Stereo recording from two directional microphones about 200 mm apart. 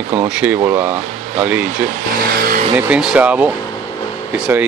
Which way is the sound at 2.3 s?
45° right (ahead or behind).